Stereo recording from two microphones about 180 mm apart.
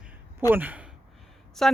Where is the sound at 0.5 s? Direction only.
10° right (ahead or behind).